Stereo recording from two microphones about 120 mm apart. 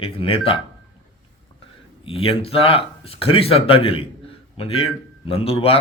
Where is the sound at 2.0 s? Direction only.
50° left (ahead or behind).